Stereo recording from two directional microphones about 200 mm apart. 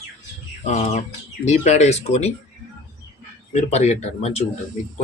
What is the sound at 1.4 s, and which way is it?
Speech, 35° left (ahead or behind).